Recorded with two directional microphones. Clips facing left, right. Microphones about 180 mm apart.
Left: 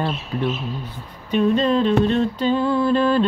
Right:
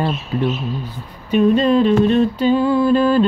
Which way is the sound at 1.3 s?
10° right (ahead or behind).